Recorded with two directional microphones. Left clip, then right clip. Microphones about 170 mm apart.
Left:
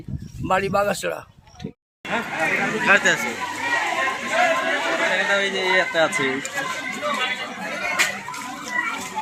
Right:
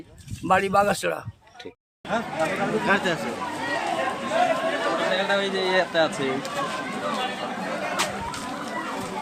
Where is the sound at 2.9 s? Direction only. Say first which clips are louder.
Left 8 dB; 80° right.